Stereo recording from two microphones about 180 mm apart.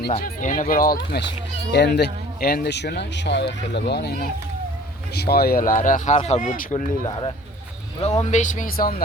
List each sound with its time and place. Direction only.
0.1 s speech: 45° left (ahead or behind)
7.0 s speech: 25° left (ahead or behind)
8.2 s speech: 40° left (ahead or behind)